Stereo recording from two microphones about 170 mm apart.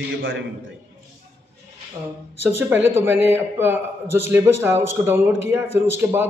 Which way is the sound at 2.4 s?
10° right (ahead or behind).